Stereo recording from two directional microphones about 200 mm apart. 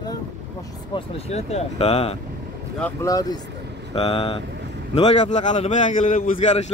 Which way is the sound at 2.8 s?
15° left (ahead or behind).